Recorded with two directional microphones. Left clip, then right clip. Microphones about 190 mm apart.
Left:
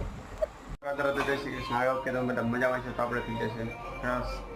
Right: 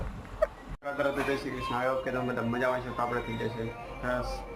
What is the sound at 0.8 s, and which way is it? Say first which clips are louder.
Speech: left 1 dB; 5° right (ahead or behind).